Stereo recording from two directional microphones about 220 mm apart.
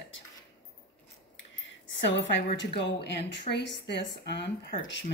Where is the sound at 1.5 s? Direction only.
55° left (ahead or behind).